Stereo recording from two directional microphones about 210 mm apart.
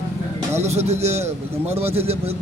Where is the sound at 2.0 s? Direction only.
30° right (ahead or behind).